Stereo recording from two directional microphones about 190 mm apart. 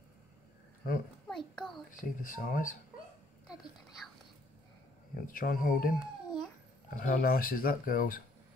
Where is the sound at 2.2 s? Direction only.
45° left (ahead or behind).